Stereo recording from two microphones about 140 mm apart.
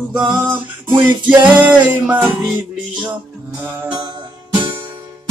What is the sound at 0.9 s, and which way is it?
Music, 35° right (ahead or behind).